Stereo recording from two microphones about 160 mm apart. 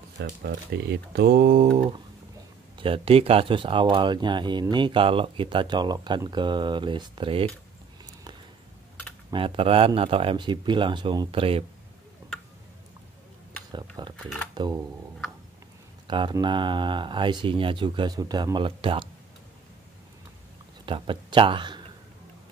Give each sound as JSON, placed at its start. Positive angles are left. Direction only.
{"t": 0.2, "sound": "speech", "side_deg": -90}
{"t": 2.8, "sound": "speech", "side_deg": -35}
{"t": 9.3, "sound": "speech", "side_deg": -35}
{"t": 13.7, "sound": "a sound", "side_deg": -25}
{"t": 16.1, "sound": "speech", "side_deg": -30}
{"t": 20.8, "sound": "speech", "side_deg": -30}